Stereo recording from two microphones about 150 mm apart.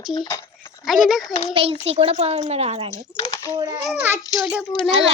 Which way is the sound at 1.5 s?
40° right (ahead or behind).